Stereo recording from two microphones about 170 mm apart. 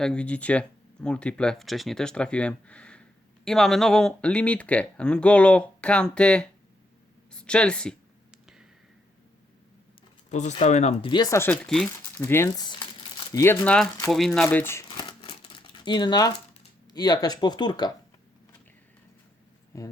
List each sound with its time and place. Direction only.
0.0 s speech: 5° left (ahead or behind)
10.3 s speech: 45° left (ahead or behind)
11.1 s speech: 20° left (ahead or behind)
11.6 s speech: centre (ahead or behind)
12.2 s speech: 15° left (ahead or behind)
14.1 s speech: centre (ahead or behind)
14.9 s crumpling: 30° left (ahead or behind)
16.9 s speech: 25° left (ahead or behind)
19.7 s speech: 20° left (ahead or behind)